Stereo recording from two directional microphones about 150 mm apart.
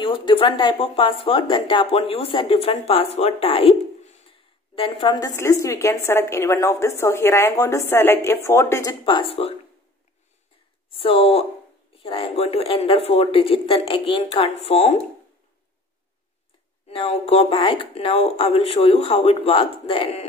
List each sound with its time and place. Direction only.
0.0 s a woman's voice: 35° left (ahead or behind); by 8.9 s 15° left (ahead or behind)
9.0 s speech: 35° left (ahead or behind)
10.9 s speech: 40° left (ahead or behind)
16.9 s speech: 40° left (ahead or behind)